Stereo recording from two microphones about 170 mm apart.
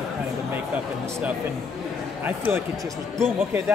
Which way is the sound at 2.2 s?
10° right (ahead or behind).